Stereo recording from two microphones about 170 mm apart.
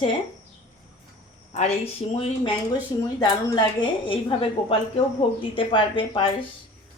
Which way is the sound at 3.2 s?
25° left (ahead or behind).